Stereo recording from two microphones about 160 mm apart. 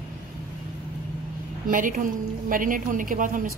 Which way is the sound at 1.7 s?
55° right (ahead or behind).